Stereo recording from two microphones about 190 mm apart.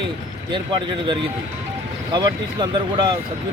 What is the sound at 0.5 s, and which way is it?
Speech, 25° right (ahead or behind).